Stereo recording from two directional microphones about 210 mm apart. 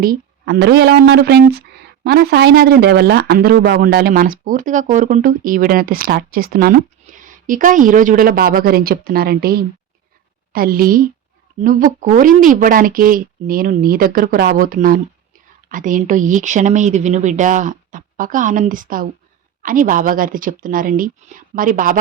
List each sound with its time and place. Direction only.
0.0 s speech: 45° right (ahead or behind)